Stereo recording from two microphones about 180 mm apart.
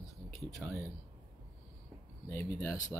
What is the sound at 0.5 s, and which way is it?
Speech, 10° left (ahead or behind).